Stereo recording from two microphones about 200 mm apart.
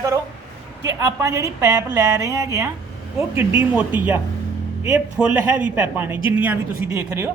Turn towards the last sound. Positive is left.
turn(degrees=-10)  # may be behind; listen again after turning